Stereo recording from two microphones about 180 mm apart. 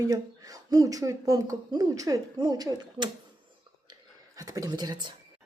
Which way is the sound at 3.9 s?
20° right (ahead or behind).